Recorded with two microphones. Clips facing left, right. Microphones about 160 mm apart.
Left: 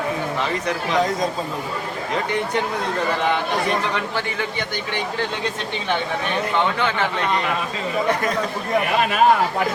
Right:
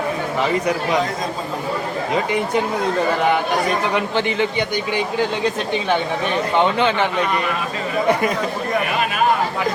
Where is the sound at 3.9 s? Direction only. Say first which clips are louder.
Right 5 dB; 20° right (ahead or behind).